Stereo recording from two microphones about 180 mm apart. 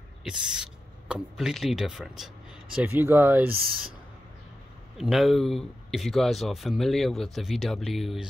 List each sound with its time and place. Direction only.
0.2 s speech: 5° right (ahead or behind)
3.5 s speech: 55° right (ahead or behind)
4.9 s speech: centre (ahead or behind)